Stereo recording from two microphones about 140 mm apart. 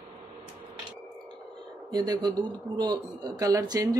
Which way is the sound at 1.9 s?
30° right (ahead or behind).